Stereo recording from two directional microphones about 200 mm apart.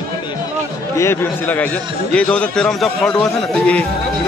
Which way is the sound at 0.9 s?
10° left (ahead or behind).